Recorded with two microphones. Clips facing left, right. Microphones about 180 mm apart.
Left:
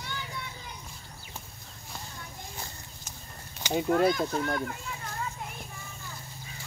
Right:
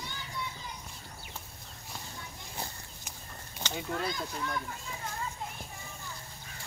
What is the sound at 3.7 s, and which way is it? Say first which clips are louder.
Speech: left 11 dB; 55° left (ahead or behind).